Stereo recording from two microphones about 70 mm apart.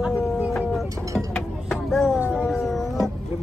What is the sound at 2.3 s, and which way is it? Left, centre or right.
Howl, centre.